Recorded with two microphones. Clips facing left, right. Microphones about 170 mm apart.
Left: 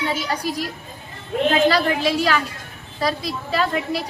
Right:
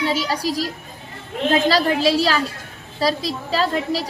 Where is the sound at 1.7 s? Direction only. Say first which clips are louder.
Right 2 dB; 35° right (ahead or behind).